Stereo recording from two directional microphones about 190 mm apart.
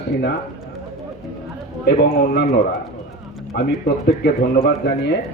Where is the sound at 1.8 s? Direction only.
55° left (ahead or behind).